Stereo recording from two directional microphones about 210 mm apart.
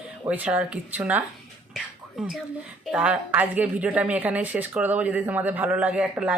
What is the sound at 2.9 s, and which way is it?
A woman's voice, 5° right (ahead or behind).